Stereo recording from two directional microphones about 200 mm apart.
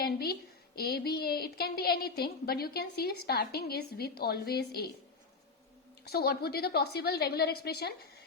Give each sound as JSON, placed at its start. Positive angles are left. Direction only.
{"t": 0.0, "sound": "a sound", "side_deg": 50}
{"t": 0.8, "sound": "a woman's voice", "side_deg": 55}
{"t": 6.1, "sound": "a woman's voice", "side_deg": 50}